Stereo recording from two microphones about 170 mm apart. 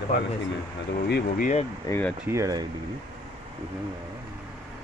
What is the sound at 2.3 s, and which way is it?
Speech, 20° right (ahead or behind).